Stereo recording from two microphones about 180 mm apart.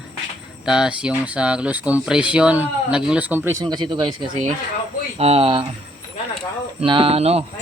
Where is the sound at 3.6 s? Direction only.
25° right (ahead or behind).